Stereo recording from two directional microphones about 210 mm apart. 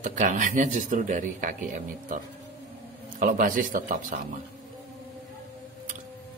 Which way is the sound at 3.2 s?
40° right (ahead or behind).